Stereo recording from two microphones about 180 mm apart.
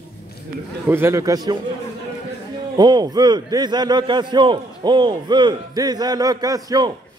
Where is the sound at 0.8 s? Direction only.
15° right (ahead or behind).